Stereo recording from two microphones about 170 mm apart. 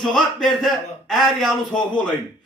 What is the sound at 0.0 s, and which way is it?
A man's voice, centre (ahead or behind).